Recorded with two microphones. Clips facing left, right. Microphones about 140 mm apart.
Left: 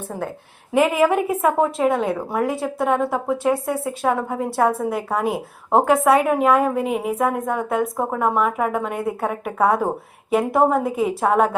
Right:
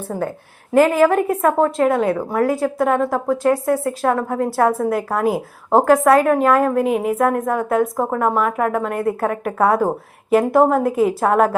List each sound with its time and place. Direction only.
0.7 s a woman's voice: 5° left (ahead or behind)